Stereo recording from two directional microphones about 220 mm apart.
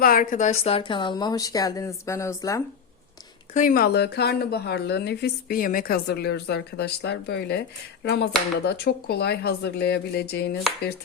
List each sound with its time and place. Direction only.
0.0 s a woman's voice: 40° left (ahead or behind); by 2.6 s 15° left (ahead or behind)
3.5 s a woman's voice: 40° left (ahead or behind)